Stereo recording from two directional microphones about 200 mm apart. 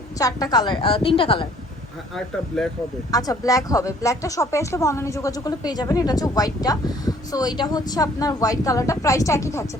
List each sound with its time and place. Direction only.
0.2 s a woman's voice: 20° left (ahead or behind)
2.5 s speech: centre (ahead or behind)
3.1 s a woman's voice: 20° left (ahead or behind)